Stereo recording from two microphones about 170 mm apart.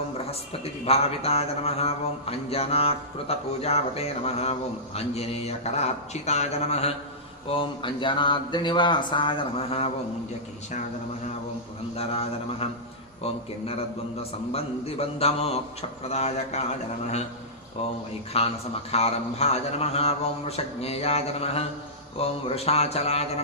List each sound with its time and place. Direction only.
0.3 s a man's voice: 35° left (ahead or behind)
11.9 s a man's voice: 35° left (ahead or behind)
18.3 s a man's voice: 35° left (ahead or behind)